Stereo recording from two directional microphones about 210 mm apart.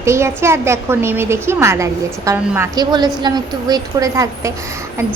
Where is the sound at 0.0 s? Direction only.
15° right (ahead or behind).